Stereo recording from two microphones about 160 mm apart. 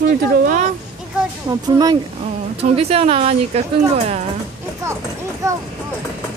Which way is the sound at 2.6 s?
40° right (ahead or behind).